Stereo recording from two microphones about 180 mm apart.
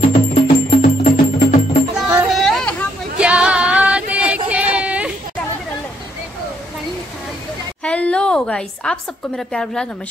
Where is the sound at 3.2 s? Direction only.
5° right (ahead or behind).